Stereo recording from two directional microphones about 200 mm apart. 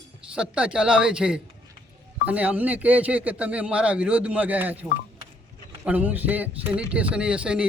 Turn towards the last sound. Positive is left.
turn(degrees=-5)  # may be behind; listen again after turning